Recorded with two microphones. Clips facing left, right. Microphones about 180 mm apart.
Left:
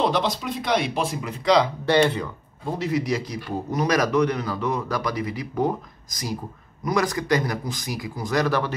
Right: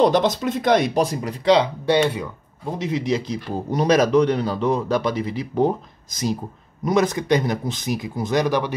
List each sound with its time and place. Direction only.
0.0 s speech: 45° right (ahead or behind); by 1.7 s 30° right (ahead or behind)
1.9 s speech: 10° right (ahead or behind)
2.8 s speech: 25° right (ahead or behind)
6.8 s speech: 25° right (ahead or behind)